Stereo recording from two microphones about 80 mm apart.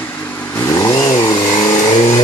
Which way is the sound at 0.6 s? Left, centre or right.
Left.